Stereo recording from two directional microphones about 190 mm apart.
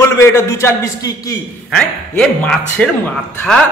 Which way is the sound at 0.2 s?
15° left (ahead or behind).